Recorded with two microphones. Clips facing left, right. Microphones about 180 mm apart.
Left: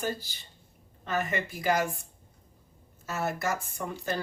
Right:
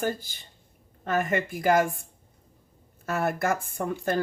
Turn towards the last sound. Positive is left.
turn(degrees=-50)  # may be behind; listen again after turning